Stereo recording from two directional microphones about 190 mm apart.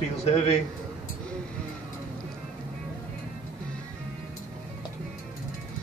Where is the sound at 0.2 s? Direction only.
35° left (ahead or behind).